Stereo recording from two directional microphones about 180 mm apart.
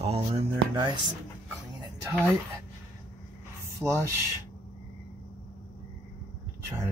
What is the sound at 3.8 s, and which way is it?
Speech, 10° left (ahead or behind).